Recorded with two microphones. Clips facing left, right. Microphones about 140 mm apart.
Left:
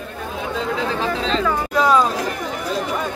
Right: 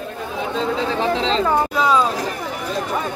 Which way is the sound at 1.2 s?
25° right (ahead or behind).